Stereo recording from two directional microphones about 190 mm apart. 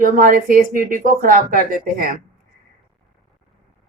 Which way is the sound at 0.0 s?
45° right (ahead or behind).